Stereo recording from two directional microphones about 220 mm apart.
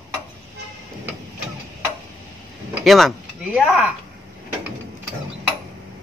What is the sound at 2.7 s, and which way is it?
Speech, centre (ahead or behind).